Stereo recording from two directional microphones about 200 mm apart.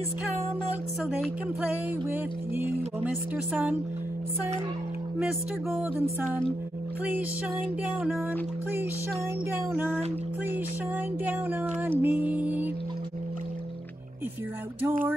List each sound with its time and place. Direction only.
2.0 s music: 10° right (ahead or behind)
5.2 s music: 5° right (ahead or behind)
11.2 s music: 10° right (ahead or behind)